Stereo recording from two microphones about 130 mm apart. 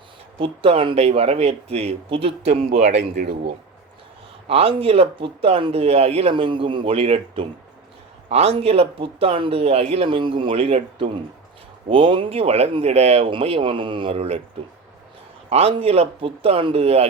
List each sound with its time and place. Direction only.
0.3 s speech: 45° right (ahead or behind)
2.6 s speech: 60° right (ahead or behind)
4.4 s speech: 45° right (ahead or behind)
15.4 s speech: 50° right (ahead or behind)